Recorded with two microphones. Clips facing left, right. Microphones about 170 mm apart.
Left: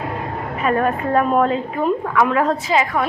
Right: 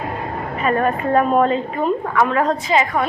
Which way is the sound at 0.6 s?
Centre (ahead or behind).